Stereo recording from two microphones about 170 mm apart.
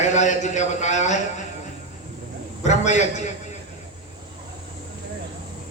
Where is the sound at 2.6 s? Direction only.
45° left (ahead or behind).